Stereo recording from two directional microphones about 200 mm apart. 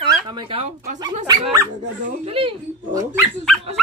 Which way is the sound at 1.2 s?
20° right (ahead or behind).